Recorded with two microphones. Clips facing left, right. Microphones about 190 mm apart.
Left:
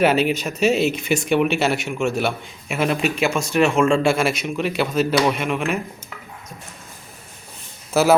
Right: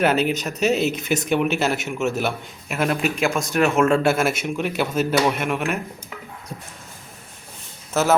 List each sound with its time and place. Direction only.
0.0 s speech: 5° left (ahead or behind)
7.9 s speech: 10° left (ahead or behind)